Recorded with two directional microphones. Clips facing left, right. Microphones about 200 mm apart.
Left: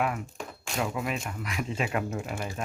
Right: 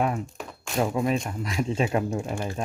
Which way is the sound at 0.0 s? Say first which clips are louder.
Right 3 dB; 30° right (ahead or behind).